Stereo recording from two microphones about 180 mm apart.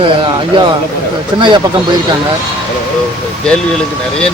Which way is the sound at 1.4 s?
25° right (ahead or behind).